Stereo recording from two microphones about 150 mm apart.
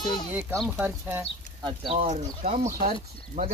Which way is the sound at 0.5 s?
10° right (ahead or behind).